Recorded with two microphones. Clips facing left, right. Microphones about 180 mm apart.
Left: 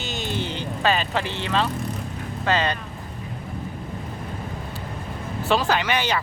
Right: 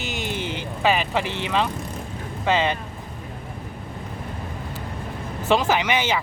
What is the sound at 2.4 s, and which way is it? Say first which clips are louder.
Speech: right 2 dB; 20° right (ahead or behind).